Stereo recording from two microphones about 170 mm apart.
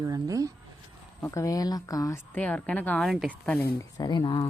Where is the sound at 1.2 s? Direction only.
15° left (ahead or behind).